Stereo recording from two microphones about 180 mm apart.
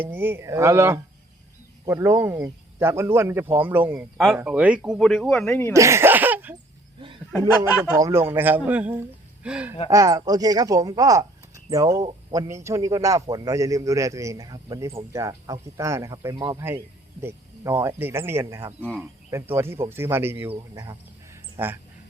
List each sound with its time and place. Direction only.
0.0 s speech: 10° right (ahead or behind)
5.7 s speech: 15° right (ahead or behind)
7.6 s speech: 15° right (ahead or behind)
9.9 s speech: 20° right (ahead or behind)
21.6 s speech: 10° right (ahead or behind)